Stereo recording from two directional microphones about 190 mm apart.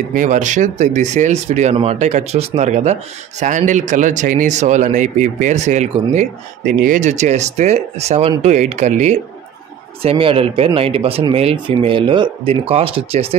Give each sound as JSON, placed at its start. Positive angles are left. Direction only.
{"t": 0.1, "sound": "speech", "side_deg": -40}